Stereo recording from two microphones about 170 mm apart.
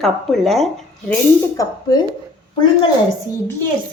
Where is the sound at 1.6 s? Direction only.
20° left (ahead or behind).